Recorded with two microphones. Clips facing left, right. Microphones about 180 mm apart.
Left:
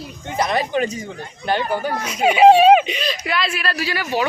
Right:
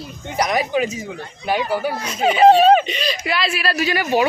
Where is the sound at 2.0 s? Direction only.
10° left (ahead or behind).